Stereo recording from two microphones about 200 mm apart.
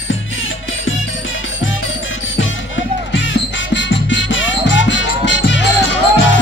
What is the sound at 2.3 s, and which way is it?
Music, 70° left (ahead or behind).